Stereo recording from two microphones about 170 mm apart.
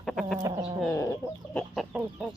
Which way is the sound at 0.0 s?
Centre (ahead or behind).